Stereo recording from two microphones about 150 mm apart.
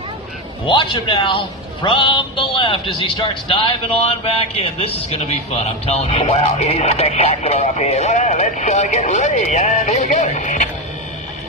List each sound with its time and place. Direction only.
0.7 s a man's voice: 30° left (ahead or behind); by 10.7 s 55° left (ahead or behind)